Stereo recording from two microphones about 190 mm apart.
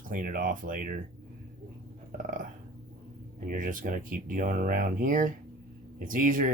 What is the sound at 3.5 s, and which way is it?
Speech, 45° right (ahead or behind).